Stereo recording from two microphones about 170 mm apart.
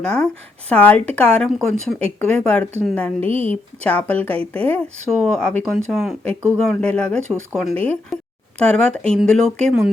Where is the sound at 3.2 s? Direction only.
35° right (ahead or behind).